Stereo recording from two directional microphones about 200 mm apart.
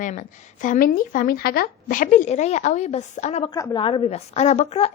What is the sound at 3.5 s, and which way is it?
A woman's voice, 20° left (ahead or behind).